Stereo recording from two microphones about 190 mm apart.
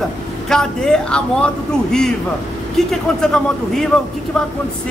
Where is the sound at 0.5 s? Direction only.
5° left (ahead or behind).